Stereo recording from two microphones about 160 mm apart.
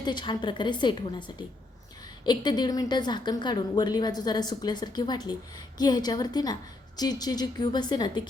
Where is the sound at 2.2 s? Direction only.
25° left (ahead or behind).